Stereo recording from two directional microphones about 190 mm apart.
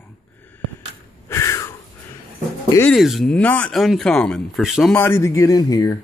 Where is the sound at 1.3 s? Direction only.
15° left (ahead or behind).